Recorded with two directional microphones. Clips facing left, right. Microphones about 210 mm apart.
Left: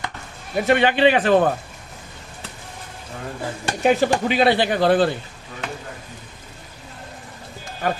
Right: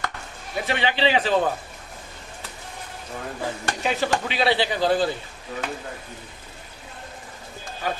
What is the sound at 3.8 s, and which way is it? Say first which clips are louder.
A man's voice: left 7 dB; 50° left (ahead or behind).